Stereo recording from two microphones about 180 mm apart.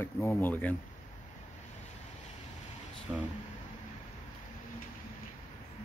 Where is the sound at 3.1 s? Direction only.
10° right (ahead or behind).